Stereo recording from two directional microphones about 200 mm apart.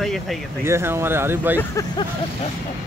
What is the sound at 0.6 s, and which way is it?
Speech, 10° right (ahead or behind).